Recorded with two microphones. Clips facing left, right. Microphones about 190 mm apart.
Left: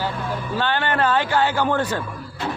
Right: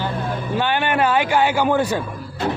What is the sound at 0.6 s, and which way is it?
A man's voice, 15° right (ahead or behind).